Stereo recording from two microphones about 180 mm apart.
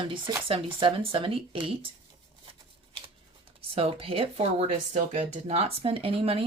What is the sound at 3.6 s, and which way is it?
Speech, 30° right (ahead or behind).